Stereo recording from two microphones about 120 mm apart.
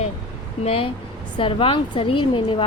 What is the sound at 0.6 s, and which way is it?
A woman's voice, 55° left (ahead or behind).